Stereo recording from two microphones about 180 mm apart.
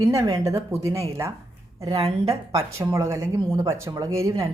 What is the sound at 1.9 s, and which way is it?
Speech, 35° right (ahead or behind).